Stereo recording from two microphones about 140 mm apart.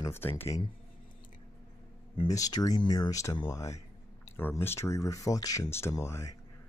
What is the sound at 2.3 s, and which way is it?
Speech, 25° left (ahead or behind).